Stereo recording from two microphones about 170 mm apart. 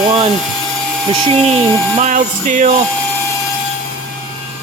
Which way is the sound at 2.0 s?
45° right (ahead or behind).